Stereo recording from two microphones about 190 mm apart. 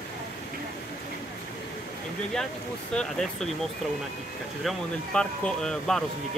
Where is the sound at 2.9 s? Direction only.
5° left (ahead or behind).